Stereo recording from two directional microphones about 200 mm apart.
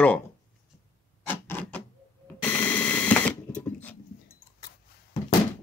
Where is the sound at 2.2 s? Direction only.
5° left (ahead or behind).